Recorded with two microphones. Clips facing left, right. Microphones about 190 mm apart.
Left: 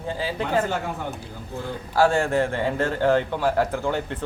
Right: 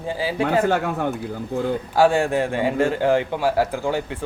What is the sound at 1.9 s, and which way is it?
Speech, 15° right (ahead or behind).